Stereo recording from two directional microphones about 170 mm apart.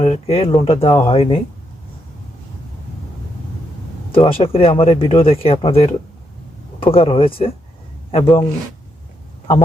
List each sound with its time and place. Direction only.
0.0 s speech: 35° left (ahead or behind)
4.1 s speech: 30° left (ahead or behind)